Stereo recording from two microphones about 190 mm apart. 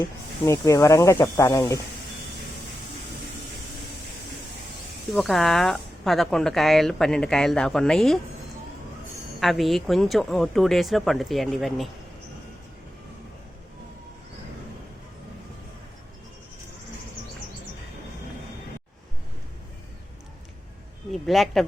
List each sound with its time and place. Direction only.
0.0 s speech: 15° left (ahead or behind)
5.1 s a woman's voice: centre (ahead or behind)
9.4 s a woman's voice: centre (ahead or behind)
21.1 s speech: centre (ahead or behind)